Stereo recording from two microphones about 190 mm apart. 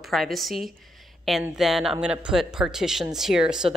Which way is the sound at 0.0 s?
Centre (ahead or behind).